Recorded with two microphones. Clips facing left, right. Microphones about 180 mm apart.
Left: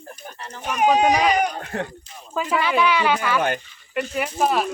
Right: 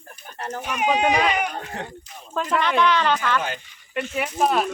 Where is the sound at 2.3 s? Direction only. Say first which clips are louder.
Left 1 dB; 5° left (ahead or behind).